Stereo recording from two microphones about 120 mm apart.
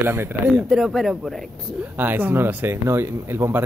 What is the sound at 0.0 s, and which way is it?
Speech, 20° right (ahead or behind).